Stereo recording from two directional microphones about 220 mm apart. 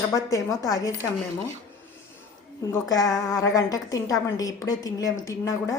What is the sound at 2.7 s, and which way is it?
A woman's voice, 15° left (ahead or behind).